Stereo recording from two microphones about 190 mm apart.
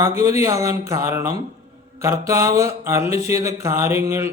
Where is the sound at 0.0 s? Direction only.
15° right (ahead or behind).